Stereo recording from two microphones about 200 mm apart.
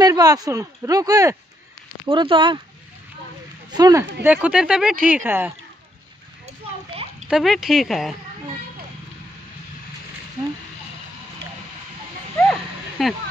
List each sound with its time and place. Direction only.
0.0 s speech: 20° right (ahead or behind)
3.7 s speech: 20° right (ahead or behind)
4.2 s speech: 5° right (ahead or behind)
7.2 s speech: centre (ahead or behind)
13.0 s speech: centre (ahead or behind)